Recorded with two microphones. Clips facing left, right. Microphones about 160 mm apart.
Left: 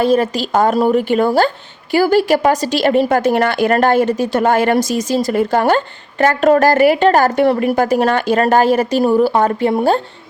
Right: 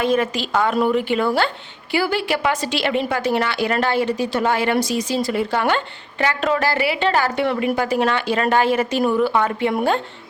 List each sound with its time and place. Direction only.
0.0 s a woman's voice: 35° left (ahead or behind)